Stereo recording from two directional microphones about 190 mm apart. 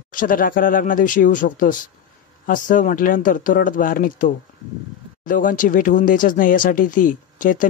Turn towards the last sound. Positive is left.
turn(degrees=45)  # may be behind; listen again after turning